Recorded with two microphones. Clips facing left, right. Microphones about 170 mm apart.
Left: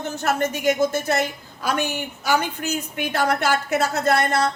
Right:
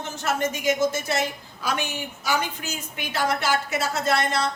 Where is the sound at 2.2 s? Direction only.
55° left (ahead or behind).